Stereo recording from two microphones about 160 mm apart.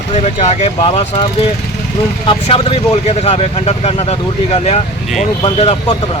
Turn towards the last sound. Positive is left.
turn(degrees=40)  # may be behind; listen again after turning